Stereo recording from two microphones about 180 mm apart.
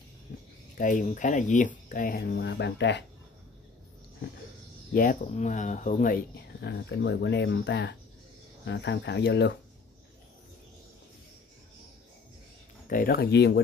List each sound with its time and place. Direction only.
0.7 s speech: 45° left (ahead or behind); by 3.1 s 70° left (ahead or behind)
4.9 s speech: 45° left (ahead or behind); by 9.6 s 70° left (ahead or behind)
12.8 s speech: 55° left (ahead or behind)